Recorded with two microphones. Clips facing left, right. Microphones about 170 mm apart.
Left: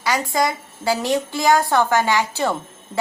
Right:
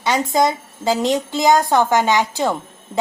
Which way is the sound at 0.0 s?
25° right (ahead or behind).